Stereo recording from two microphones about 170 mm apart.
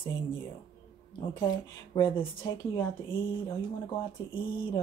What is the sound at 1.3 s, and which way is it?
Speech, 25° left (ahead or behind).